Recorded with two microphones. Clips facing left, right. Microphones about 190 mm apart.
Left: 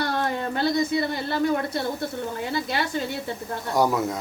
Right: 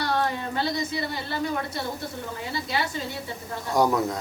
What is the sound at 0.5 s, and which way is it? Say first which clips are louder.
A woman's voice: left 5 dB; 55° left (ahead or behind).